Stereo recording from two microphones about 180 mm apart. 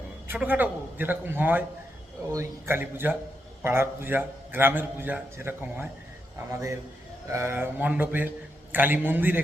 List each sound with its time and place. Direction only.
0.3 s a man's voice: 10° right (ahead or behind)